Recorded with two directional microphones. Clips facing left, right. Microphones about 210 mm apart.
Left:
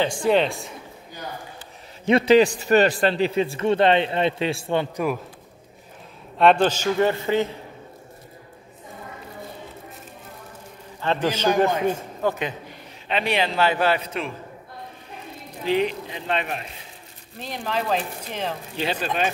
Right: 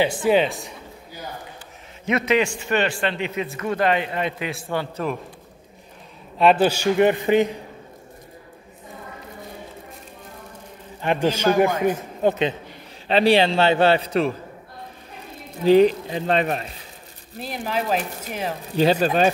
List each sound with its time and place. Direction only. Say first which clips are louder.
0.0 s speech: right 1 dB; 5° right (ahead or behind)
2.0 s a man's voice: left 5 dB; 30° left (ahead or behind)
6.3 s a man's voice: even; 5° right (ahead or behind)
11.0 s a man's voice: right 2 dB; 15° right (ahead or behind)
12.2 s a man's voice: right 8 dB; 20° right (ahead or behind)
13.1 s a man's voice: right 7 dB; 35° right (ahead or behind)
15.6 s a man's voice: right 8 dB; 40° right (ahead or behind)
17.4 s a man's voice: right 1 dB; 5° right (ahead or behind)
18.8 s a man's voice: right 10 dB; 40° right (ahead or behind)